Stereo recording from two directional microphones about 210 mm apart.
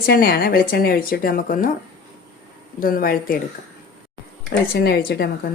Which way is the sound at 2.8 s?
45° left (ahead or behind).